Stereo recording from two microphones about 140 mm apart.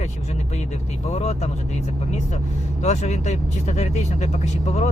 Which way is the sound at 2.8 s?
55° left (ahead or behind).